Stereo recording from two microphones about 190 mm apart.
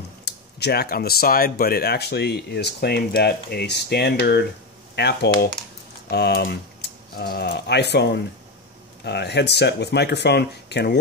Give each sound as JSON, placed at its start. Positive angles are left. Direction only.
{"t": 0.2, "sound": "speech", "side_deg": 60}